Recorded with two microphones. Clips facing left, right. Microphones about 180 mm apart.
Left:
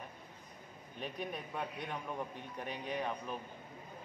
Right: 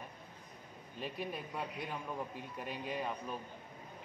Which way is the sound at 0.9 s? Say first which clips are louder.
Even; 5° right (ahead or behind).